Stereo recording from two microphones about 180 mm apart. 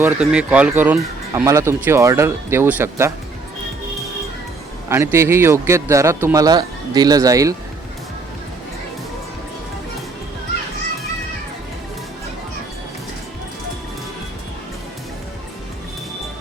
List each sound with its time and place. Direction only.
0.0 s speech: 5° right (ahead or behind)
4.9 s speech: 15° right (ahead or behind)